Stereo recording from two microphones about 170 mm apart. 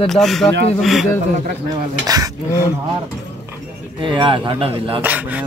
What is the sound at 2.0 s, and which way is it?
Speech, 20° right (ahead or behind).